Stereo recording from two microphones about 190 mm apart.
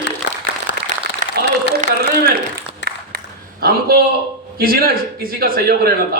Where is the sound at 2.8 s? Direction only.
75° left (ahead or behind).